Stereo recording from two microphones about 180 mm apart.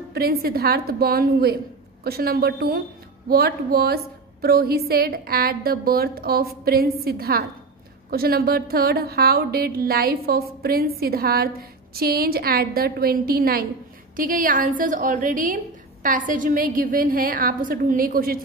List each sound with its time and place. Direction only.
0.1 s a woman's voice: 60° right (ahead or behind)